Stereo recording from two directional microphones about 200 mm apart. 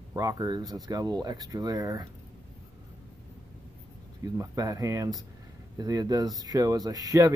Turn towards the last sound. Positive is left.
turn(degrees=-15)  # may be behind; listen again after turning